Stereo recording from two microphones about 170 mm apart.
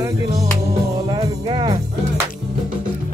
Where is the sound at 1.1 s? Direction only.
30° right (ahead or behind).